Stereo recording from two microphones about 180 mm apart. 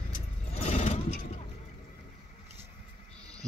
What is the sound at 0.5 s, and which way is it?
Vehicle, 35° left (ahead or behind).